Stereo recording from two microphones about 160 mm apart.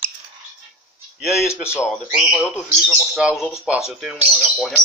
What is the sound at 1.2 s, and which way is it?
Speech, centre (ahead or behind).